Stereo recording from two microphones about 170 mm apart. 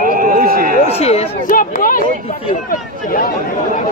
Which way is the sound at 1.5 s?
55° left (ahead or behind).